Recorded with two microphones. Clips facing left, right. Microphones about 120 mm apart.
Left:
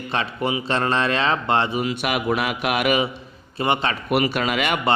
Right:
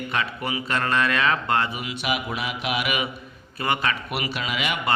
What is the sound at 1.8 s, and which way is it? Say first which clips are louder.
Mantra: left 5 dB; 50° left (ahead or behind).